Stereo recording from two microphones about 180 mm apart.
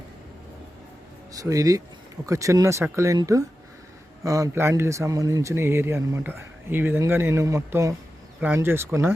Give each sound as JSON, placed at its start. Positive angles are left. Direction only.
{"t": 1.3, "sound": "a man's voice", "side_deg": -20}